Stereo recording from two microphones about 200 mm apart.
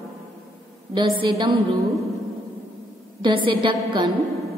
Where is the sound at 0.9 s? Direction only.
20° right (ahead or behind).